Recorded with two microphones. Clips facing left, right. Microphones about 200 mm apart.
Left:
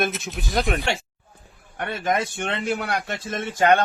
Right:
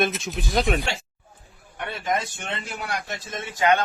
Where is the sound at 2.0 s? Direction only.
60° left (ahead or behind).